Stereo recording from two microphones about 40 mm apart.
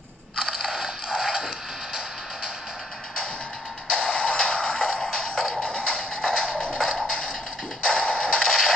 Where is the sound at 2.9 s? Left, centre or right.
Centre.